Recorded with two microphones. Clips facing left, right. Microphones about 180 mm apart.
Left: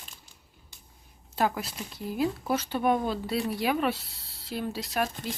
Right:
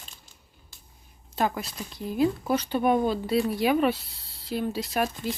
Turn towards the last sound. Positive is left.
turn(degrees=0)  # may be behind; listen again after turning